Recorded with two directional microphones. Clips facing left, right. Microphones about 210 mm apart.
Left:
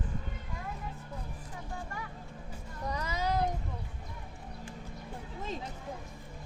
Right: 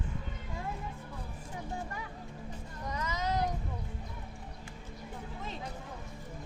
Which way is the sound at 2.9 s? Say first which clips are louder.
Left 1 dB; 35° left (ahead or behind).